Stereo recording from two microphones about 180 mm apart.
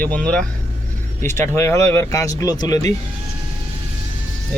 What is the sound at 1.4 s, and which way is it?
Speech, 15° left (ahead or behind).